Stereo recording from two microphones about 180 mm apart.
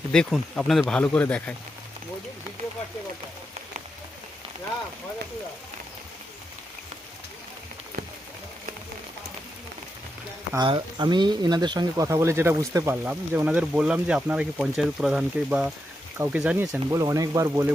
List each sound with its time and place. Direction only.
0.1 s speech: 5° left (ahead or behind)
10.5 s speech: 25° right (ahead or behind); by 16.8 s 5° right (ahead or behind)
16.9 s speech: 20° right (ahead or behind)